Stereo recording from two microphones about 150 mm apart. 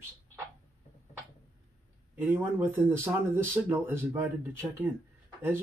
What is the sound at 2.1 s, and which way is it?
Speech, 15° right (ahead or behind).